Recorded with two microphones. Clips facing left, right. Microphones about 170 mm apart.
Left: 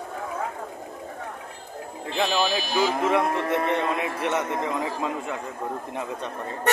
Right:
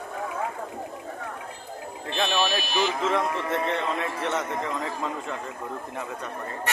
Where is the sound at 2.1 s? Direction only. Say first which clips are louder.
Left 2 dB; 10° left (ahead or behind).